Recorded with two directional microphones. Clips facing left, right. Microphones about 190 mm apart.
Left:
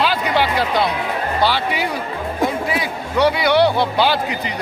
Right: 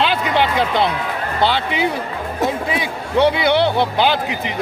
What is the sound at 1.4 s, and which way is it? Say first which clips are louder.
Speech: right 2 dB; 20° right (ahead or behind).